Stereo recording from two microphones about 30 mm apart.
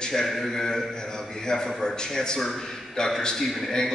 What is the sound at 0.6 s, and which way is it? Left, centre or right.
A man's voice, centre.